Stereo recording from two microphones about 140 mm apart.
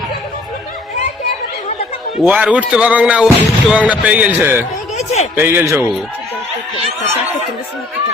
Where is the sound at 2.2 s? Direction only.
10° right (ahead or behind).